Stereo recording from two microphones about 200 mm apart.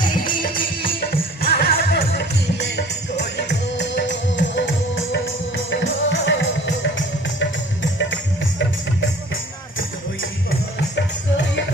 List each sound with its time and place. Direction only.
0.0 s music: 45° left (ahead or behind); by 6.7 s 65° left (ahead or behind)
7.9 s music: 65° left (ahead or behind)